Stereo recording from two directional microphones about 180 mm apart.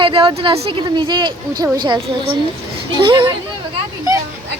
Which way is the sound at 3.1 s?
30° right (ahead or behind).